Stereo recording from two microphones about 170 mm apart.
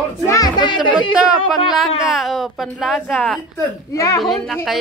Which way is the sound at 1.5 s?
Centre (ahead or behind).